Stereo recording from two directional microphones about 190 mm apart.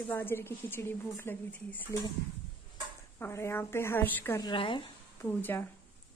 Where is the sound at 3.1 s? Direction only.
15° left (ahead or behind).